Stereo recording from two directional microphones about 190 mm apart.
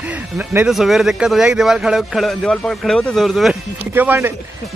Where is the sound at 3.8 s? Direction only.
10° right (ahead or behind).